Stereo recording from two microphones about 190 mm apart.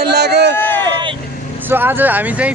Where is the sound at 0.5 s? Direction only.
10° left (ahead or behind).